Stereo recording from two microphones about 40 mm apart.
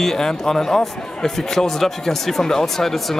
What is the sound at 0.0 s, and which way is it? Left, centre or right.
Speech, centre.